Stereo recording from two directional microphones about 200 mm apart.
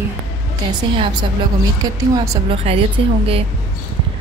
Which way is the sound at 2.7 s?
30° right (ahead or behind).